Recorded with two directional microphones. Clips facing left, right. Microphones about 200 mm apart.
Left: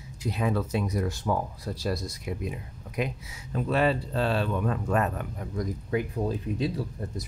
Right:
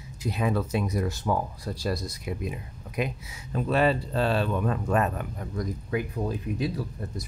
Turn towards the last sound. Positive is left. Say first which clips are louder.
# even
turn(degrees=25)  # may be behind; listen again after turning